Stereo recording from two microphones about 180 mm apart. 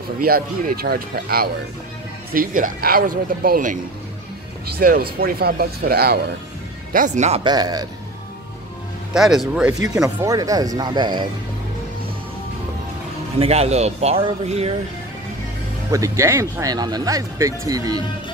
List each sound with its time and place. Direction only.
0.2 s speech: 55° right (ahead or behind)
6.9 s speech: 45° right (ahead or behind)
7.4 s speech: 20° right (ahead or behind)
9.1 s speech: centre (ahead or behind)
10.0 s speech: 20° right (ahead or behind)
13.4 s speech: 35° right (ahead or behind)
15.9 s speech: 15° right (ahead or behind)